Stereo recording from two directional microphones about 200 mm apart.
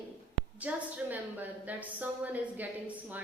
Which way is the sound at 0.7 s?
5° right (ahead or behind).